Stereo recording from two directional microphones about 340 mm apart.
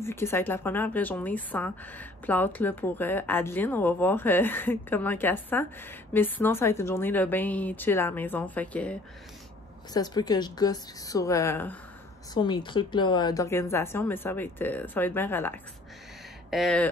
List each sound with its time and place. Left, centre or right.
0.0 s a woman's voice: centre
9.9 s a woman's voice: centre